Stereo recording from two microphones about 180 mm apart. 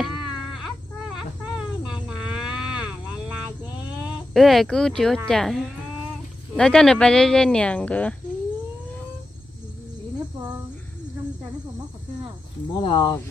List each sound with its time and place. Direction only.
2.0 s a sound: 5° right (ahead or behind)
4.0 s speech: centre (ahead or behind)
12.7 s speech: 25° left (ahead or behind)